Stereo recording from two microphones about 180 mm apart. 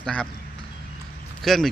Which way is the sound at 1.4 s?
Centre (ahead or behind).